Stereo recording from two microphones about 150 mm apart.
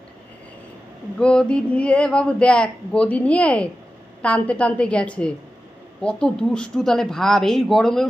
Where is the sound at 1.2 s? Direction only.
5° left (ahead or behind).